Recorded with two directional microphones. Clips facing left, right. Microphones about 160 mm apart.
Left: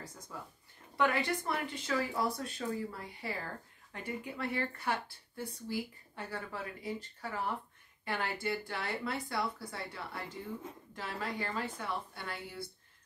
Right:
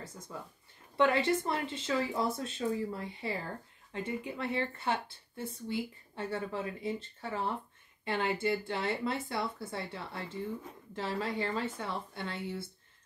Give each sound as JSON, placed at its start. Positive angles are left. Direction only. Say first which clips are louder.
{"t": 0.9, "sound": "speech", "louder": "right 4 dB", "side_deg": -25}